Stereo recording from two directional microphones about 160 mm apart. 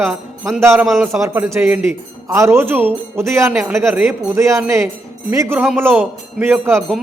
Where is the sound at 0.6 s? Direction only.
15° right (ahead or behind).